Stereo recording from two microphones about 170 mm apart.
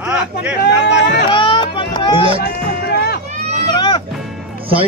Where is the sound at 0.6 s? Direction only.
75° left (ahead or behind).